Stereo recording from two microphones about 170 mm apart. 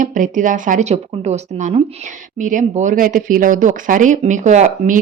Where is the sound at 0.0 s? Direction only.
50° right (ahead or behind).